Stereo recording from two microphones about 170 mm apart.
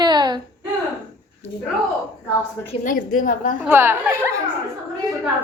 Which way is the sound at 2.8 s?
50° left (ahead or behind).